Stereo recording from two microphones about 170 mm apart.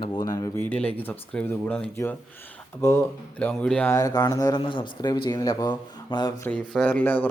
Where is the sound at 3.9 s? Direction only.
20° left (ahead or behind).